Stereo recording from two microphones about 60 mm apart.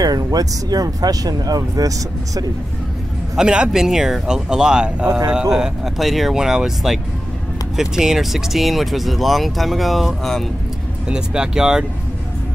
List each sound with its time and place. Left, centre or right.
0.0 s speech: right
3.3 s speech: centre
5.9 s speech: centre
11.1 s speech: centre